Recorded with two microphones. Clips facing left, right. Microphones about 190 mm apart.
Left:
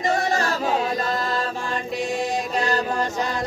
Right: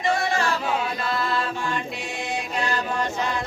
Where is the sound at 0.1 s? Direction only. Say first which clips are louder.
Even; 40° left (ahead or behind).